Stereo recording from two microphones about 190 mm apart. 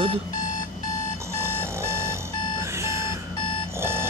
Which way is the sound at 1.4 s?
10° right (ahead or behind).